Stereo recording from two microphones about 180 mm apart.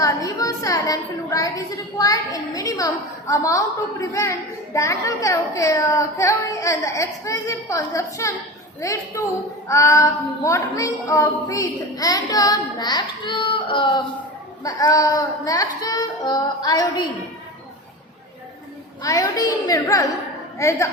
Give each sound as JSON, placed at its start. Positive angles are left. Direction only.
{"t": 0.0, "sound": "a child's voice", "side_deg": 20}
{"t": 19.0, "sound": "a child's voice", "side_deg": 20}